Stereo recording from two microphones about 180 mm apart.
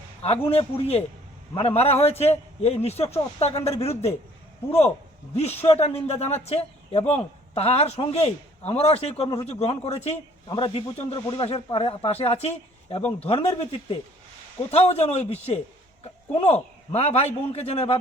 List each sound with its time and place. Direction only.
0.2 s a man's voice: 35° left (ahead or behind)
5.3 s a man's voice: 35° left (ahead or behind)